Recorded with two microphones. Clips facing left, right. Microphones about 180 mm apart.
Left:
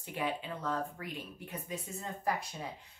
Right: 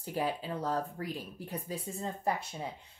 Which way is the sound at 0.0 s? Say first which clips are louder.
Right 3 dB; 35° right (ahead or behind).